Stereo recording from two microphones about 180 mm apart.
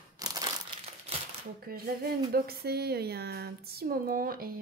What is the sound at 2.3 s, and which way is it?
Speech, 60° right (ahead or behind).